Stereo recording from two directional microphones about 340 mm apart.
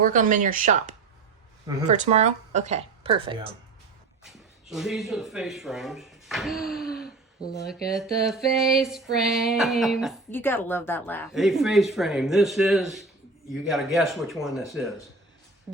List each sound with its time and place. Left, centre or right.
0.0 s speech: right
4.2 s speech: centre
7.9 s speech: centre